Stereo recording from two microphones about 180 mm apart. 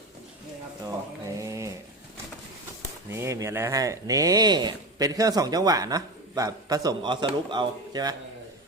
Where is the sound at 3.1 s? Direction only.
15° right (ahead or behind).